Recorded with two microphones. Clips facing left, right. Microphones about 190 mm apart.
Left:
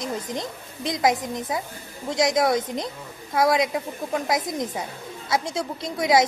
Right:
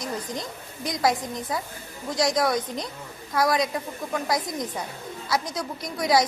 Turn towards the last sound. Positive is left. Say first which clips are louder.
# left 2 dB
turn(degrees=25)  # may be behind; listen again after turning